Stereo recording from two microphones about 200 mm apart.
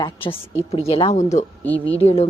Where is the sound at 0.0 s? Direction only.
25° left (ahead or behind).